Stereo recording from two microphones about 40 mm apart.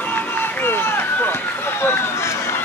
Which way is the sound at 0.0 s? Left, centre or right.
Left.